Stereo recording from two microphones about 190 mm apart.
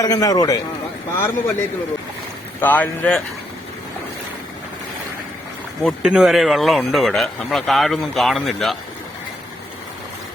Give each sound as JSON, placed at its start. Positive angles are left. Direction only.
{"t": 0.0, "sound": "a man's voice", "side_deg": 20}
{"t": 5.8, "sound": "speech", "side_deg": -5}